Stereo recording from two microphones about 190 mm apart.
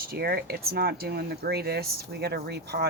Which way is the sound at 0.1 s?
55° right (ahead or behind).